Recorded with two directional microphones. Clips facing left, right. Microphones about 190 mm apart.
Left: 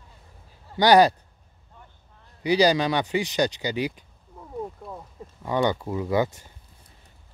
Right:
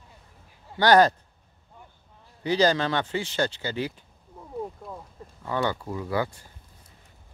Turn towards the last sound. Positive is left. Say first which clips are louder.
# left 4 dB
turn(degrees=20)  # may be behind; listen again after turning